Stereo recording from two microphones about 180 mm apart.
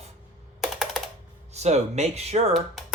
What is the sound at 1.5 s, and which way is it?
Speech, 40° right (ahead or behind).